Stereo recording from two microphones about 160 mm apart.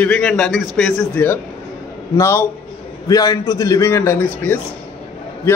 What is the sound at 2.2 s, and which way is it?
A man's voice, 15° left (ahead or behind).